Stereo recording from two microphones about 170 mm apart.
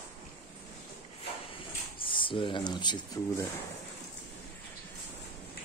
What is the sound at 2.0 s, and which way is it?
Speech, 30° left (ahead or behind).